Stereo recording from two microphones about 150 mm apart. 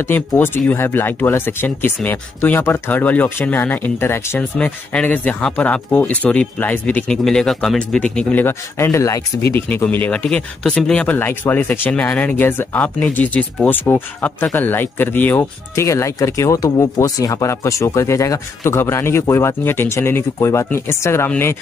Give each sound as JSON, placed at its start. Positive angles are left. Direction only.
{"t": 0.0, "sound": "speech", "side_deg": 15}